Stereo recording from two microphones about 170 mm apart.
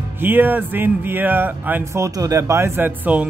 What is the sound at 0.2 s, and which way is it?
Speech, 10° right (ahead or behind).